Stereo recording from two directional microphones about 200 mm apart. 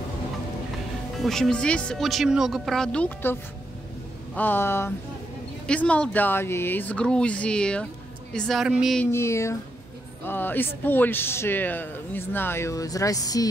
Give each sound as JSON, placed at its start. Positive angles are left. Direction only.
{"t": 1.1, "sound": "speech", "side_deg": 0}
{"t": 4.4, "sound": "speech", "side_deg": 10}
{"t": 9.1, "sound": "speech", "side_deg": 15}